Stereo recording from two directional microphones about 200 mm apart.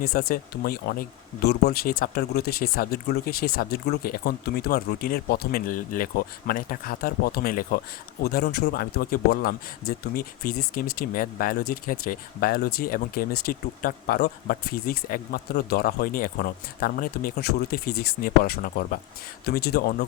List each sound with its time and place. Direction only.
0.0 s speech: 50° left (ahead or behind)